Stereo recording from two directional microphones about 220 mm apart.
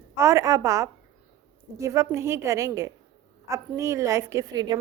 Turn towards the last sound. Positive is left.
turn(degrees=-20)  # may be behind; listen again after turning